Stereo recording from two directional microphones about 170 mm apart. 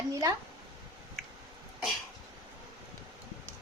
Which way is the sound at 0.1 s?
20° right (ahead or behind).